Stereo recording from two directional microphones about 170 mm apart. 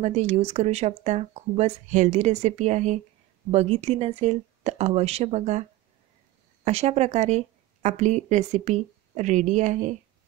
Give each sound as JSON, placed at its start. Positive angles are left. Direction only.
{"t": 0.0, "sound": "a woman's voice", "side_deg": -40}